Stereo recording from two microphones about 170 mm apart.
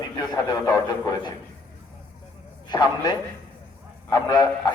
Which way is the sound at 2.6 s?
25° left (ahead or behind).